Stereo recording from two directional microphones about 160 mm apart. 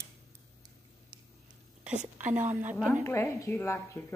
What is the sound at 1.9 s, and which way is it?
Speech, 50° right (ahead or behind).